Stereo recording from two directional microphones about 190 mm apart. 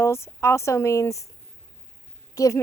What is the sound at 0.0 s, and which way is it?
Speech, 15° left (ahead or behind).